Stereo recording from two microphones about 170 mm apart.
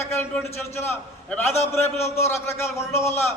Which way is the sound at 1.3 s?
15° left (ahead or behind).